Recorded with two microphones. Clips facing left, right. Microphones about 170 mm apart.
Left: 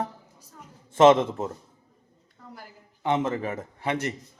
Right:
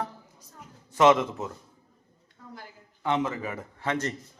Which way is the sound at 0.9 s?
25° left (ahead or behind).